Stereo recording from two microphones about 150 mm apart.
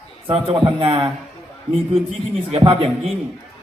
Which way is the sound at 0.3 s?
35° right (ahead or behind).